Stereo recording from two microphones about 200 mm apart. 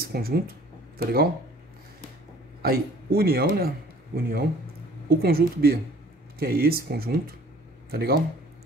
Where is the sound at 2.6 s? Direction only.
50° right (ahead or behind).